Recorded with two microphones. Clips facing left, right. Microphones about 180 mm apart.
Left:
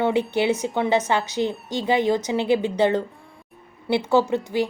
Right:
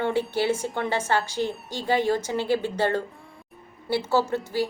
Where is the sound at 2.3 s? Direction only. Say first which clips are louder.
Left 4 dB; 20° left (ahead or behind).